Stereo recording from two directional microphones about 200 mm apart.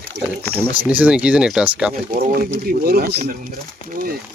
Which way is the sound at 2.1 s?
45° right (ahead or behind).